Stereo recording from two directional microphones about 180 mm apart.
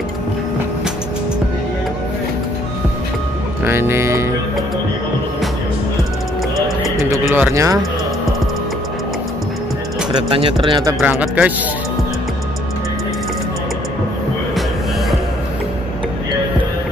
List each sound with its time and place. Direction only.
3.6 s speech: 15° right (ahead or behind)
7.0 s speech: 15° right (ahead or behind)
10.1 s speech: 30° right (ahead or behind)
11.0 s speech: 5° right (ahead or behind)